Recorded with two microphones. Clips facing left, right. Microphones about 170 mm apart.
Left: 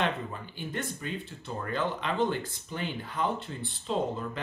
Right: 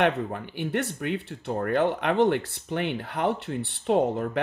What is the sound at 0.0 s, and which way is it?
Speech, 70° right (ahead or behind).